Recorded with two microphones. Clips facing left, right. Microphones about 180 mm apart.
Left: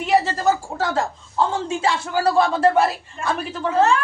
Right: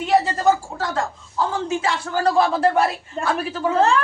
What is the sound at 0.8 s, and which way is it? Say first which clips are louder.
A woman's voice: left 2 dB; 30° left (ahead or behind).